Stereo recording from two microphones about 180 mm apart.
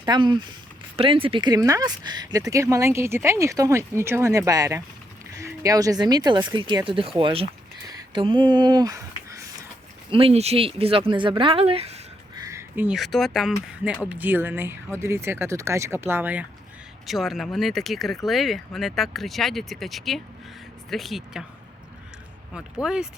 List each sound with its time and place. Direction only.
0.0 s speech: 25° right (ahead or behind)
10.1 s speech: 30° right (ahead or behind)
12.5 s speech: 15° right (ahead or behind)
22.5 s speech: 5° right (ahead or behind)